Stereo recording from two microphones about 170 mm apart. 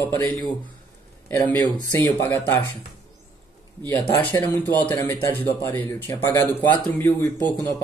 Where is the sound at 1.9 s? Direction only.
15° left (ahead or behind).